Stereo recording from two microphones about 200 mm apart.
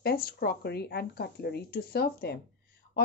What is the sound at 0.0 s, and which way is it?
Speech, 50° left (ahead or behind).